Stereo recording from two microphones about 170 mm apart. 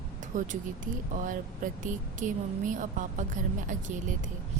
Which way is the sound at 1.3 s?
50° right (ahead or behind).